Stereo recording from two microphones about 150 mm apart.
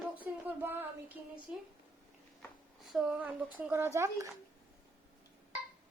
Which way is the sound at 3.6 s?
15° right (ahead or behind).